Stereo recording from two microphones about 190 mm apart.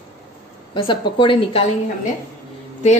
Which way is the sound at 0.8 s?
25° left (ahead or behind).